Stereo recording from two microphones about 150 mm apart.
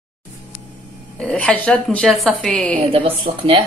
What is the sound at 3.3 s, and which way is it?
Speech, 40° right (ahead or behind).